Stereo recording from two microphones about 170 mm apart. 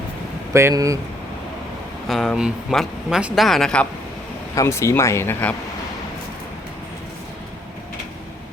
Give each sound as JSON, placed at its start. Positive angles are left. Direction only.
{"t": 0.5, "sound": "speech", "side_deg": -20}
{"t": 2.0, "sound": "speech", "side_deg": 0}
{"t": 4.5, "sound": "speech", "side_deg": 15}